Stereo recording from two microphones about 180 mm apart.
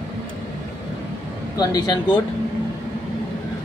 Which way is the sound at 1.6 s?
20° left (ahead or behind).